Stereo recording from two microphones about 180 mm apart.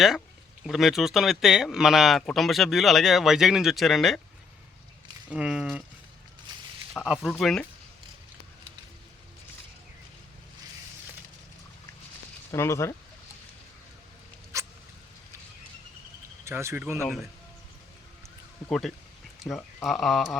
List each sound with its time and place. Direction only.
0.6 s speech: centre (ahead or behind)
5.3 s speech: 5° right (ahead or behind)
6.9 s speech: centre (ahead or behind)
12.5 s speech: 15° left (ahead or behind)
14.5 s rodents: 15° right (ahead or behind)
16.4 s speech: 15° right (ahead or behind)
18.7 s speech: centre (ahead or behind)